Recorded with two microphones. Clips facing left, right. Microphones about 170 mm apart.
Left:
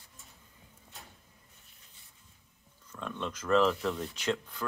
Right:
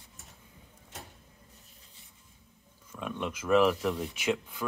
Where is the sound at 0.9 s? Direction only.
80° right.